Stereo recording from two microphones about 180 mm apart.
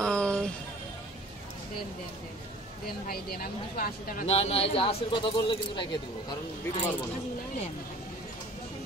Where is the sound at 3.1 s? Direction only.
55° left (ahead or behind).